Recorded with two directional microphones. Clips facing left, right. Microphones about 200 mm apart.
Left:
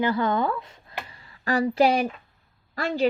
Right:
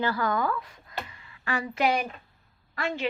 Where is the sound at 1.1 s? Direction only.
35° left (ahead or behind).